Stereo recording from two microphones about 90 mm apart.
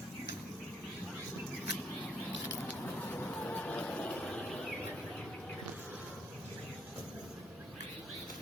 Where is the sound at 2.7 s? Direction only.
20° left (ahead or behind).